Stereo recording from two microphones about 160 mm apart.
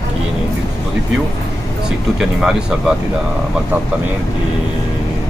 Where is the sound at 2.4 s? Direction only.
5° right (ahead or behind).